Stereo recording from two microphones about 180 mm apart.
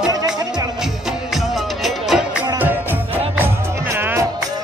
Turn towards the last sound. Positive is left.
turn(degrees=-15)  # may be behind; listen again after turning